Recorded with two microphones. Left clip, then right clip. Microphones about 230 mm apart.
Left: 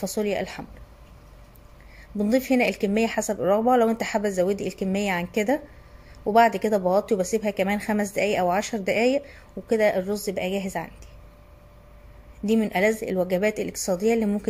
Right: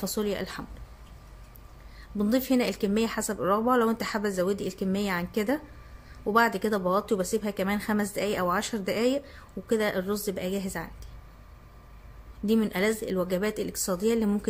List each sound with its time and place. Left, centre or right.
0.0 s speech: centre
2.1 s speech: centre
12.4 s speech: centre